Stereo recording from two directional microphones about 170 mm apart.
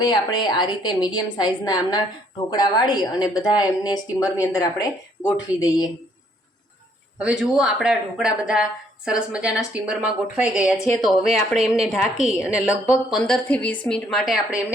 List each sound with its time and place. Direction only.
0.0 s a woman's voice: 25° left (ahead or behind)
7.2 s speech: 5° right (ahead or behind)